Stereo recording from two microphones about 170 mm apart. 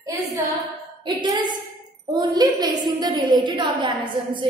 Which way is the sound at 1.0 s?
25° right (ahead or behind).